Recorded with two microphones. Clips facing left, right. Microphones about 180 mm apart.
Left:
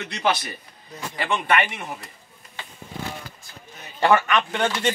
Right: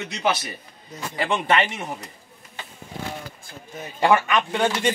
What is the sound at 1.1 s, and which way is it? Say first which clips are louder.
Speech: right 1 dB; 25° right (ahead or behind).